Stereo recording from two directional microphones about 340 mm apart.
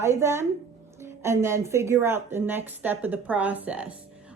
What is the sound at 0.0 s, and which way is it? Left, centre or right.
A woman's voice, centre.